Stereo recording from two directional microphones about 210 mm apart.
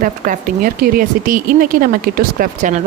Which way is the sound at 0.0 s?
40° right (ahead or behind).